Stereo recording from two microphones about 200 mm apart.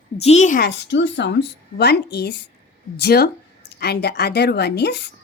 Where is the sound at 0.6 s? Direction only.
60° left (ahead or behind).